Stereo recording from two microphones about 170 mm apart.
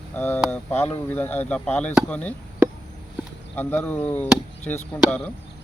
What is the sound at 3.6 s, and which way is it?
Speech, 10° left (ahead or behind).